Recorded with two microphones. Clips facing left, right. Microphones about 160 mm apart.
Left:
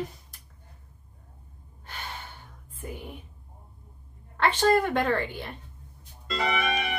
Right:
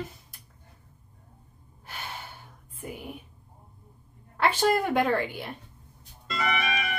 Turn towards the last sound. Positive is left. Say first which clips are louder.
# left 2 dB
turn(degrees=30)  # may be behind; listen again after turning